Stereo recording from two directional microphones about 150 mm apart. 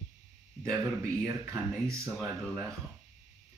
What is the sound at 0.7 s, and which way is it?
Speech, 20° right (ahead or behind).